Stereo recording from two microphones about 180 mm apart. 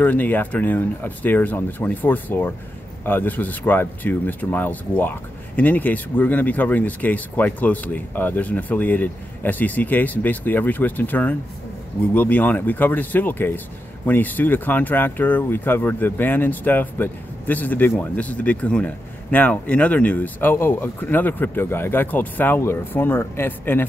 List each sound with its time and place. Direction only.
0.0 s speech: 10° left (ahead or behind)